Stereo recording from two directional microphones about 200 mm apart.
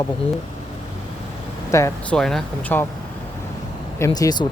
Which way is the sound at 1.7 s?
15° left (ahead or behind).